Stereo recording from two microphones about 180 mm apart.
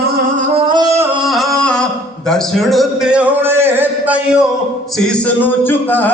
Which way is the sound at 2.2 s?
5° left (ahead or behind).